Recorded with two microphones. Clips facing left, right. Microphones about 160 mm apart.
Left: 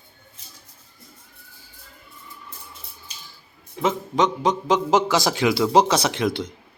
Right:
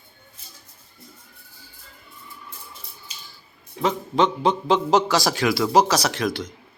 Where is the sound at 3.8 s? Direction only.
15° left (ahead or behind).